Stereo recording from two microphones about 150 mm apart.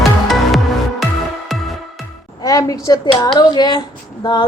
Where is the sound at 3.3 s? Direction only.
30° left (ahead or behind).